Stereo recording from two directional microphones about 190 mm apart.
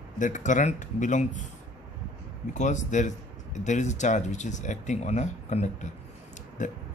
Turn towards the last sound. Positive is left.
turn(degrees=40)  # may be behind; listen again after turning